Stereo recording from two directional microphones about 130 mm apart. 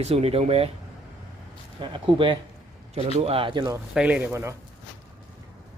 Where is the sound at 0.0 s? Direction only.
50° right (ahead or behind).